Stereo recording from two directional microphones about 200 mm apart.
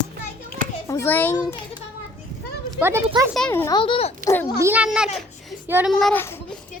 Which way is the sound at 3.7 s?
25° left (ahead or behind).